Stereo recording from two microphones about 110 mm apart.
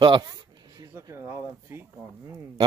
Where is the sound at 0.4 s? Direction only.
40° right (ahead or behind).